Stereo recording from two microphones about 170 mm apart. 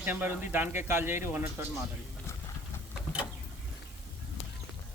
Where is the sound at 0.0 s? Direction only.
10° right (ahead or behind).